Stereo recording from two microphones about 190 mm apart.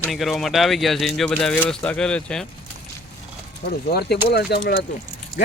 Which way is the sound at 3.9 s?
60° left (ahead or behind).